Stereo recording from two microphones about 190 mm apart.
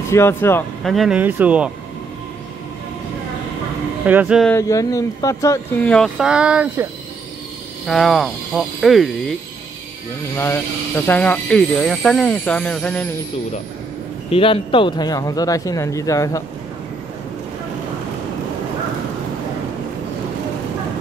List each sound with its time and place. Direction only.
0.1 s speech: 10° left (ahead or behind)
0.8 s speech: centre (ahead or behind)
4.0 s speech: 10° right (ahead or behind)
4.6 s speech: 15° left (ahead or behind)
5.9 s speech: 5° left (ahead or behind)
10.3 s speech: 15° left (ahead or behind)
14.3 s a man's voice: 30° left (ahead or behind)